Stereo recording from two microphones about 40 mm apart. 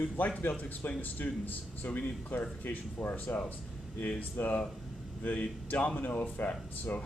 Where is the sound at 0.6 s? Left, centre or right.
Left.